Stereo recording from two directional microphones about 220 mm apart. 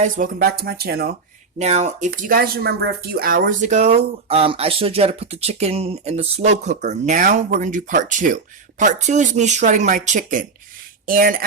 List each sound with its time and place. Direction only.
0.0 s speech: 40° right (ahead or behind)
1.5 s speech: 30° right (ahead or behind)
2.0 s speech: 45° right (ahead or behind)